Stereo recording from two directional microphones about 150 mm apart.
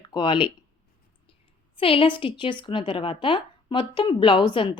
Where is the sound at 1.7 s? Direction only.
35° left (ahead or behind).